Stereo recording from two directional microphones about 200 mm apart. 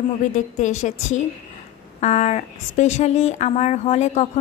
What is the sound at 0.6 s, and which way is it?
Speech, 35° left (ahead or behind).